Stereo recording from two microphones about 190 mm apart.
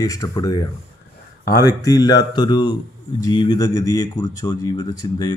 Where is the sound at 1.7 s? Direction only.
20° left (ahead or behind).